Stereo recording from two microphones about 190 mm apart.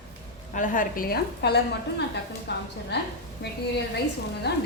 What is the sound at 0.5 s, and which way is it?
A woman's voice, 45° left (ahead or behind).